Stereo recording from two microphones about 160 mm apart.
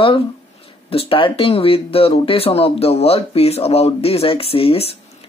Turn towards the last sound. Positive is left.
turn(degrees=35)  # may be behind; listen again after turning